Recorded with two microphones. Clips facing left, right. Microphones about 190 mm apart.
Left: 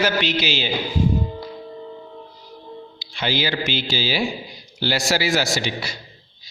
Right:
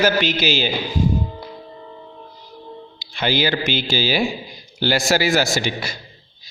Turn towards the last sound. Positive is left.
turn(degrees=-50)  # may be behind; listen again after turning